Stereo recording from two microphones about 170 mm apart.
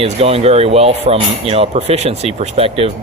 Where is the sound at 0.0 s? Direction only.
35° right (ahead or behind).